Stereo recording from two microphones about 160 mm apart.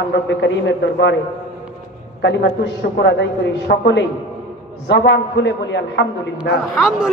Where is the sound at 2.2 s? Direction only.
90° left.